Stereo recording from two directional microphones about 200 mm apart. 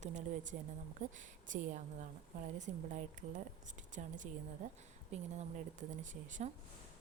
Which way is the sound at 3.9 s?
40° right (ahead or behind).